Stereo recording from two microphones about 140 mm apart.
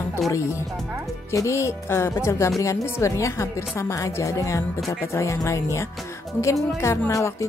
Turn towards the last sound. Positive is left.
turn(degrees=20)  # may be behind; listen again after turning